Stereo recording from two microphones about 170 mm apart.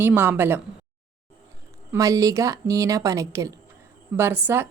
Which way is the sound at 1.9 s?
20° right (ahead or behind).